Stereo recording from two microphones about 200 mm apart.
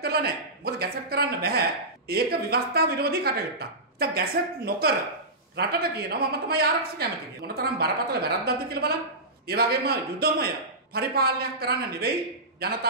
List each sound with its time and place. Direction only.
0.0 s speech: 50° right (ahead or behind)